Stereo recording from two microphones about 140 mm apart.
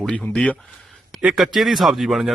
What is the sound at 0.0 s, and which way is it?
A man's voice, 5° left (ahead or behind).